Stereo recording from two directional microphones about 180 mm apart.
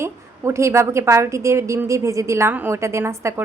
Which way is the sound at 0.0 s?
15° right (ahead or behind).